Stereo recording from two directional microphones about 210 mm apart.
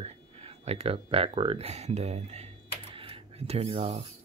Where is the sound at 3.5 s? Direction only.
25° right (ahead or behind).